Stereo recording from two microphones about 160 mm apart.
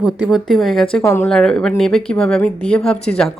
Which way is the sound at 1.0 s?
15° left (ahead or behind).